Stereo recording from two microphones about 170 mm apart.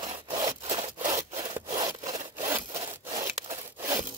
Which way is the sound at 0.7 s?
40° right (ahead or behind).